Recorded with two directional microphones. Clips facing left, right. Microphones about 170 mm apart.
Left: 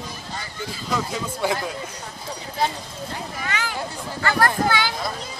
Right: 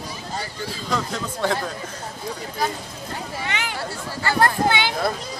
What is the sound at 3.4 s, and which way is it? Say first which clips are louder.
Speech: left 1 dB; 20° right (ahead or behind).